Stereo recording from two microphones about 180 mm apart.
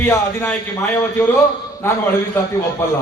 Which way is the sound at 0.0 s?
15° left (ahead or behind).